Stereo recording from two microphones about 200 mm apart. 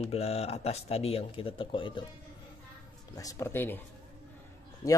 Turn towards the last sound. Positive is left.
turn(degrees=15)  # may be behind; listen again after turning